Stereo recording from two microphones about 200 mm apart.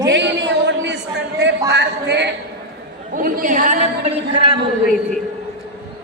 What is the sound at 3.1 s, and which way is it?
A woman's voice, 45° right (ahead or behind).